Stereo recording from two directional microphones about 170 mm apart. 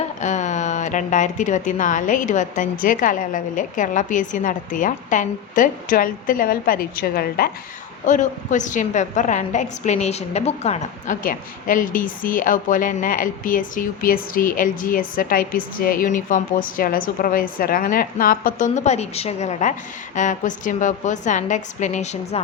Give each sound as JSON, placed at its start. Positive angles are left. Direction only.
{"t": 0.2, "sound": "a woman's voice", "side_deg": 45}
{"t": 8.0, "sound": "a woman's voice", "side_deg": 50}